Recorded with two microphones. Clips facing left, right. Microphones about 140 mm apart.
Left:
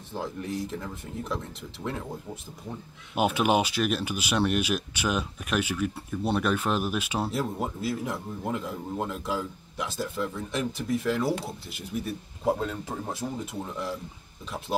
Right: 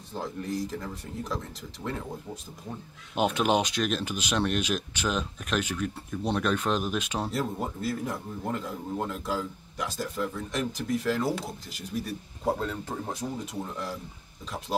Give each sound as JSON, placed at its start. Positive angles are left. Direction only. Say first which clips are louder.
{"t": 0.1, "sound": "speech", "louder": "even", "side_deg": 0}
{"t": 3.2, "sound": "speech", "louder": "left 1 dB", "side_deg": 5}
{"t": 12.4, "sound": "speech", "louder": "left 2 dB", "side_deg": 5}